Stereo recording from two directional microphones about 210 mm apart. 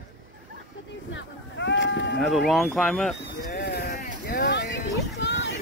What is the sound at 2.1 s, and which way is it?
Speech, centre (ahead or behind).